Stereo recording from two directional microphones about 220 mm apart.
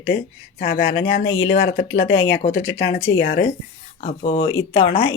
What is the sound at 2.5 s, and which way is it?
Speech, 55° left (ahead or behind).